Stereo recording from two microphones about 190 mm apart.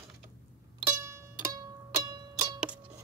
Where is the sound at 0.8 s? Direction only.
15° right (ahead or behind).